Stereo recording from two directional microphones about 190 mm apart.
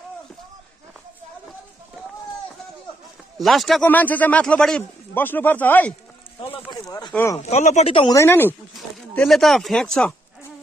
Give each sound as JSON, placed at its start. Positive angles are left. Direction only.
{"t": 3.3, "sound": "a man's voice", "side_deg": 0}
{"t": 7.1, "sound": "a man's voice", "side_deg": 10}
{"t": 7.4, "sound": "speech", "side_deg": 35}
{"t": 8.1, "sound": "a man's voice", "side_deg": 15}